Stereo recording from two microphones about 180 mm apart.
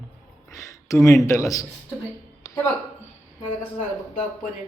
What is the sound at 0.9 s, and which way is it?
Speech, 15° left (ahead or behind).